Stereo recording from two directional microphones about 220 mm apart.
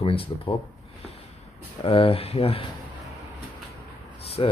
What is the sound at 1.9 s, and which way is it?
Speech, 25° left (ahead or behind).